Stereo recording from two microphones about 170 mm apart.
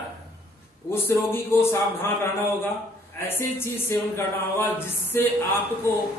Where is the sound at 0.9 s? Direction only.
15° left (ahead or behind).